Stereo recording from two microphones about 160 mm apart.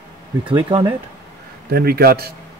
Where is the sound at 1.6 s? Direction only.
75° right (ahead or behind).